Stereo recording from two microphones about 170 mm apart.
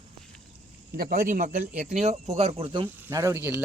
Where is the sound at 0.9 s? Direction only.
55° right (ahead or behind); by 2.9 s 35° right (ahead or behind).